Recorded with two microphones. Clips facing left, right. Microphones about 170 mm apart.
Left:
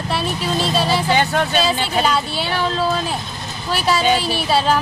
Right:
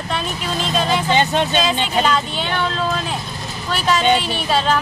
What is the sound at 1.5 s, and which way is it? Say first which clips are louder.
Speech: even; 10° left (ahead or behind).